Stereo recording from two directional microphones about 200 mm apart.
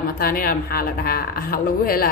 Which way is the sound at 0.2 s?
45° left (ahead or behind).